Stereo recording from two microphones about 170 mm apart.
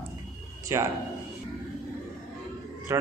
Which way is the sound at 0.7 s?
15° right (ahead or behind).